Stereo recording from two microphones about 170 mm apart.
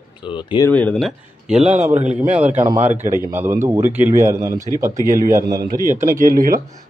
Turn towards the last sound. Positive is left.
turn(degrees=-55)  # may be behind; listen again after turning